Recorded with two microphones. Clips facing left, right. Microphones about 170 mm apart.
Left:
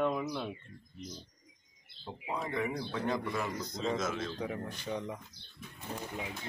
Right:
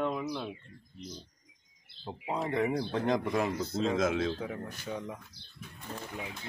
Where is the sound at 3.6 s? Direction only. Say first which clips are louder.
Right 4 dB; 5° right (ahead or behind).